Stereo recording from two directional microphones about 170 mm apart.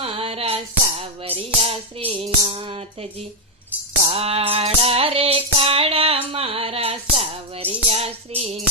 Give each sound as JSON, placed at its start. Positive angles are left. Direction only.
{"t": 0.0, "sound": "music", "side_deg": -35}